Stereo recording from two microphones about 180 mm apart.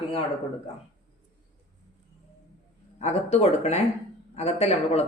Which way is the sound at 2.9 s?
40° left (ahead or behind).